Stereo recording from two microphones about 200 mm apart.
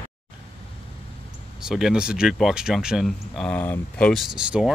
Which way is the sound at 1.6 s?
5° right (ahead or behind).